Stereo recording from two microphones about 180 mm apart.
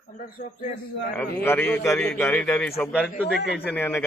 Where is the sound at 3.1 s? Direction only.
60° left (ahead or behind).